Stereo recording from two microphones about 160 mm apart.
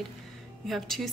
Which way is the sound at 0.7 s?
Centre (ahead or behind).